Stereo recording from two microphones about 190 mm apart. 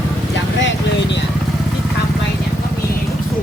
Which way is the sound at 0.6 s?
75° left (ahead or behind).